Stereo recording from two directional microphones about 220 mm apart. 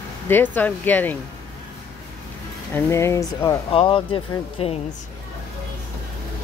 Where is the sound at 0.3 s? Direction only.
10° left (ahead or behind).